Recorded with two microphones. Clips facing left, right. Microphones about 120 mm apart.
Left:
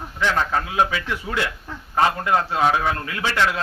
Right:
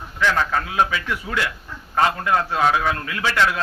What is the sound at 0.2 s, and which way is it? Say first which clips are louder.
A man's voice: right 1 dB; 25° left (ahead or behind).